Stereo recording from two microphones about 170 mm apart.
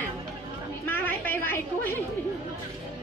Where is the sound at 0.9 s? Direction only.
10° left (ahead or behind).